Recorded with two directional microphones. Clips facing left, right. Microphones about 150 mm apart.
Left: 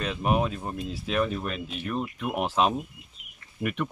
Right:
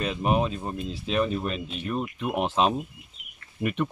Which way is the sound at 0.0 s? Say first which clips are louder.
Right 1 dB; centre (ahead or behind).